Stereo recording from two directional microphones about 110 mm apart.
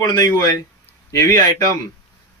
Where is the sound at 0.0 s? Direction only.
30° left (ahead or behind).